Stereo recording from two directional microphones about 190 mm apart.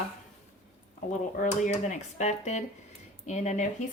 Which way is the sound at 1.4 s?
40° left (ahead or behind).